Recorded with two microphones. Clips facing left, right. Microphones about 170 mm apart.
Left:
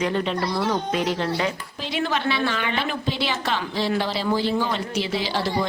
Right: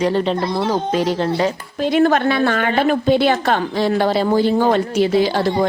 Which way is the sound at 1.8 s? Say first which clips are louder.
Right 13 dB; 50° right (ahead or behind).